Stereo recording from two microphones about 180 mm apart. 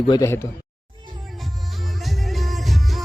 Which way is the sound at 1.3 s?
Centre (ahead or behind).